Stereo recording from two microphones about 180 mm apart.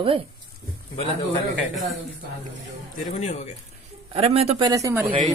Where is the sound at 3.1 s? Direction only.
35° left (ahead or behind).